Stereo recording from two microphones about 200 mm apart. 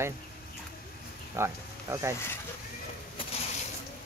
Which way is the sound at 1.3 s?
15° right (ahead or behind).